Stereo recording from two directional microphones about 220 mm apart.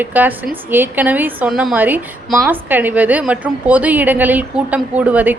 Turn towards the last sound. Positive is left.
turn(degrees=-5)  # may be behind; listen again after turning